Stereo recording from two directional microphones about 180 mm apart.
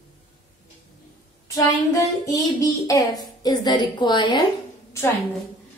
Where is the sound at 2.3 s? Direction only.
20° left (ahead or behind).